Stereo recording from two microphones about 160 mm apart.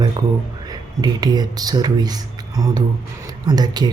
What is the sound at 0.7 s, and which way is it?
Speech, 25° right (ahead or behind).